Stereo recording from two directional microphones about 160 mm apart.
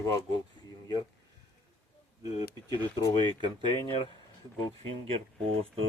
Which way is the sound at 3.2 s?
30° right (ahead or behind).